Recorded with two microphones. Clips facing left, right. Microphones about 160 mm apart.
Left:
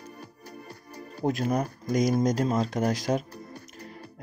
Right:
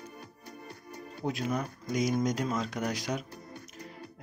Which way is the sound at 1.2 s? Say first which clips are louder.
Left 6 dB; 45° left (ahead or behind).